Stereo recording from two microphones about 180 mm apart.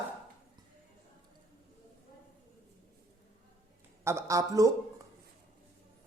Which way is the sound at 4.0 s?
15° right (ahead or behind).